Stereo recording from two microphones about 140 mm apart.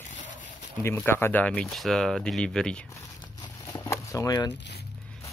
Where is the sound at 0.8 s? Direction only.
15° left (ahead or behind).